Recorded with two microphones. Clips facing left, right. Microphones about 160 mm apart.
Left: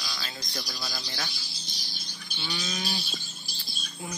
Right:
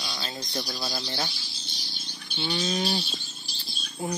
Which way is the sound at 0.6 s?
40° right (ahead or behind).